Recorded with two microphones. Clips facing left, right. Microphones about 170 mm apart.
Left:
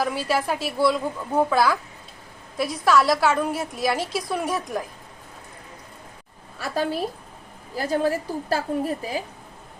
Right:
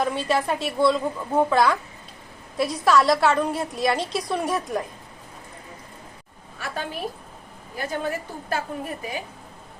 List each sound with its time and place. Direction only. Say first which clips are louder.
0.0 s a woman's voice: right 1 dB; 5° left (ahead or behind)
6.6 s a woman's voice: left 5 dB; 35° left (ahead or behind)